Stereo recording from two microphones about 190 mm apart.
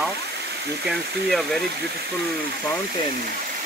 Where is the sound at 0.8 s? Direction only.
Centre (ahead or behind).